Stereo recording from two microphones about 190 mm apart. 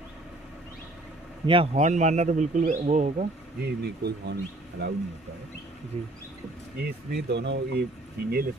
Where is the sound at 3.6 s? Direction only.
60° right (ahead or behind).